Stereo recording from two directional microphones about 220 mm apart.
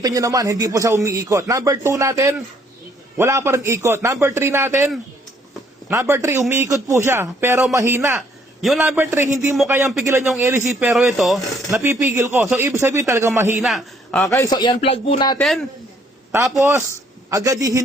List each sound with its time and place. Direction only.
0.0 s speech: 15° right (ahead or behind)
5.9 s speech: 10° right (ahead or behind)
11.7 s speech: 10° right (ahead or behind)
13.6 s a man's voice: centre (ahead or behind)
14.3 s a man's voice: 15° left (ahead or behind)
15.4 s speech: centre (ahead or behind)
16.3 s speech: 10° right (ahead or behind)